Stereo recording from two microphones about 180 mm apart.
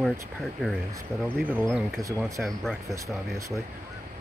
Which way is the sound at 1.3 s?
10° right (ahead or behind).